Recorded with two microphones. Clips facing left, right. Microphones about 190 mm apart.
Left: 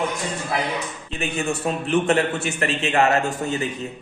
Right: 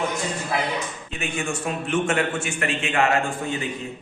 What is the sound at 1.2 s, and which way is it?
A man's voice, 35° left (ahead or behind).